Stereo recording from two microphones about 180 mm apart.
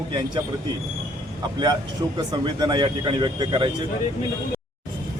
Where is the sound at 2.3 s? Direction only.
25° right (ahead or behind).